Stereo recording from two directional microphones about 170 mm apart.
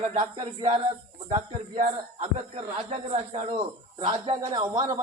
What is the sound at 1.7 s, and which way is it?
Speech, 55° right (ahead or behind).